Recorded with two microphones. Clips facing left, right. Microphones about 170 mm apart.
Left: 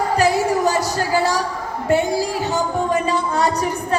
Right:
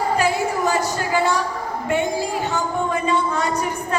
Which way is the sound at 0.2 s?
40° left (ahead or behind).